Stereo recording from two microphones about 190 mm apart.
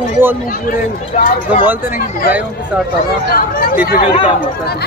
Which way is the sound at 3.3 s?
50° left (ahead or behind).